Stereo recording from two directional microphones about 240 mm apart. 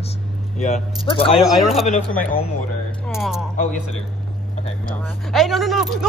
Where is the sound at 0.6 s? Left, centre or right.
Left.